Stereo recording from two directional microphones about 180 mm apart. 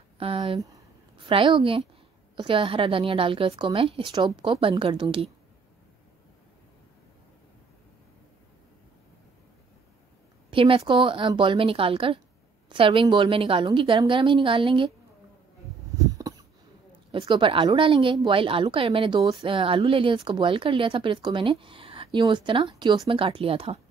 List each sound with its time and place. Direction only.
0.2 s a woman's voice: 30° right (ahead or behind)
10.5 s a woman's voice: 30° right (ahead or behind)
16.0 s a sound: 20° right (ahead or behind)
17.1 s a woman's voice: 30° right (ahead or behind)